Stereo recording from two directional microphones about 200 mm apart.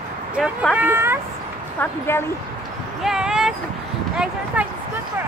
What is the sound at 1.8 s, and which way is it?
Speech, 10° left (ahead or behind).